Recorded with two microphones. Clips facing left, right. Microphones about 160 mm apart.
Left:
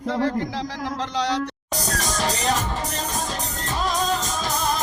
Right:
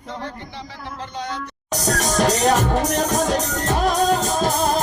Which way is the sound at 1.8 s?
70° right (ahead or behind).